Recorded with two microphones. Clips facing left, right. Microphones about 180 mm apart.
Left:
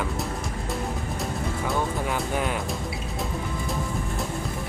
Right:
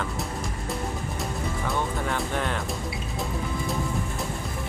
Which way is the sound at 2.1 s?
10° left (ahead or behind).